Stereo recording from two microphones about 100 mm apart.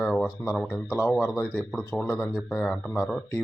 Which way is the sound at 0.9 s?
5° right (ahead or behind).